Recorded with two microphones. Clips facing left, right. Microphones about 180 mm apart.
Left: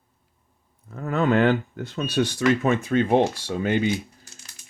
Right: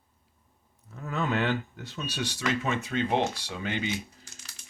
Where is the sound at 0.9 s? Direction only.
60° left (ahead or behind).